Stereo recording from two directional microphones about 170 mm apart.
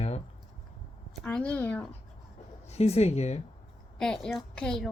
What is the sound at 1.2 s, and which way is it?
Speech, 10° left (ahead or behind).